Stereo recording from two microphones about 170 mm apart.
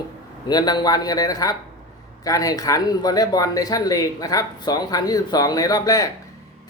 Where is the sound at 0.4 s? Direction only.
25° left (ahead or behind).